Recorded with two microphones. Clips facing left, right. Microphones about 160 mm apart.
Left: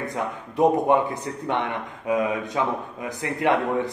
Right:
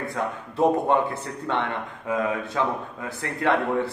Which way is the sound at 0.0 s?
15° left (ahead or behind).